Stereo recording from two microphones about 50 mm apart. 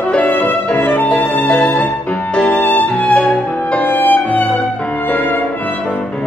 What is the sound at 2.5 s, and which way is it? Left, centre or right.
Music, left.